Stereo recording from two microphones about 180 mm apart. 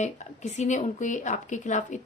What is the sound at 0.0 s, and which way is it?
A woman's voice, 40° left (ahead or behind).